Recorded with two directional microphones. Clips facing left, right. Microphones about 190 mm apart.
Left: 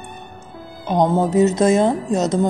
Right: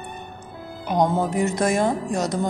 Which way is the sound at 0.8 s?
20° left (ahead or behind).